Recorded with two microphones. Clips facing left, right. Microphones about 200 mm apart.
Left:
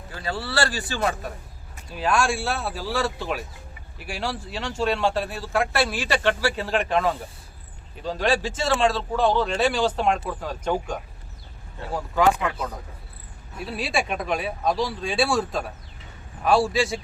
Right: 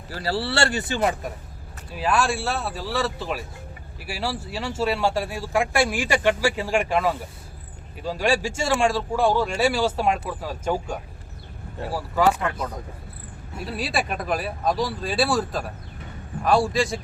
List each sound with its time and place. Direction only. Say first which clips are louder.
0.1 s speech: right 4 dB; 35° right (ahead or behind)
1.9 s speech: even; 5° right (ahead or behind)